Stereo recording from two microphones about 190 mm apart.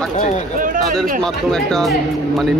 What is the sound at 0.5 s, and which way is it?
Speech, 45° right (ahead or behind).